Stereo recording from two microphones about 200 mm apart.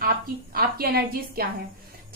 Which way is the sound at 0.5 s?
50° right (ahead or behind).